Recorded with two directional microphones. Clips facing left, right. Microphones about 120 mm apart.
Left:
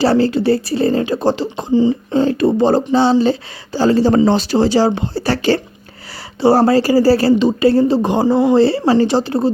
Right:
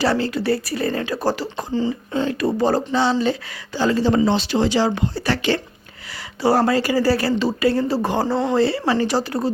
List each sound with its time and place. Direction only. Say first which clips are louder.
0.0 s speech: left 7 dB; 30° left (ahead or behind)
2.1 s speech: left 6 dB; 30° left (ahead or behind)
8.5 s speech: left 6 dB; 30° left (ahead or behind)